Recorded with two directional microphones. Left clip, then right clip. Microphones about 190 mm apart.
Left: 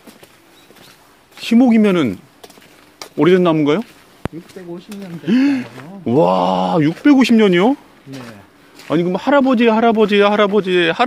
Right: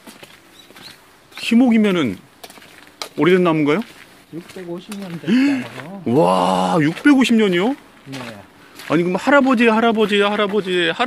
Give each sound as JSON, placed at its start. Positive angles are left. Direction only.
{"t": 1.5, "sound": "speech", "side_deg": 25}
{"t": 3.2, "sound": "speech", "side_deg": 25}
{"t": 5.2, "sound": "speech", "side_deg": 20}
{"t": 7.2, "sound": "speech", "side_deg": 40}
{"t": 8.9, "sound": "speech", "side_deg": 15}